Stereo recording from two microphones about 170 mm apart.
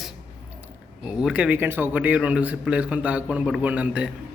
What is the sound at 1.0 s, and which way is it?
A man's voice, 5° right (ahead or behind).